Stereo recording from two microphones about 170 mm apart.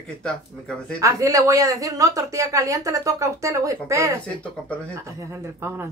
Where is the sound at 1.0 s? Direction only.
20° right (ahead or behind).